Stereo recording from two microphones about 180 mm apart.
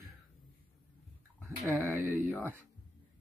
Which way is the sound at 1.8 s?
10° right (ahead or behind).